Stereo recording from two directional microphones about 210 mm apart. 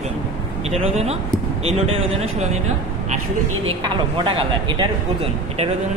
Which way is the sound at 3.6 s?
25° right (ahead or behind).